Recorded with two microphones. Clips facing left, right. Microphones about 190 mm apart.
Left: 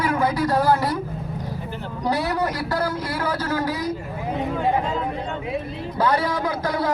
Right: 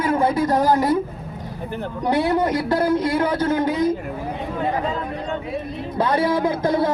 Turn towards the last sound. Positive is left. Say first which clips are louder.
# right 5 dB
turn(degrees=-25)  # may be behind; listen again after turning